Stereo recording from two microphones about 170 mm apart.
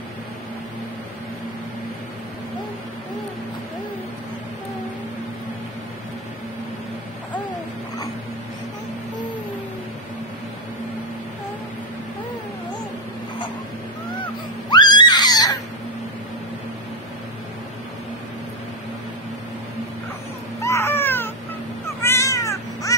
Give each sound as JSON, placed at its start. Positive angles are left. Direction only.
{"t": 14.7, "sound": "screaming", "side_deg": 25}
{"t": 20.6, "sound": "cat", "side_deg": 15}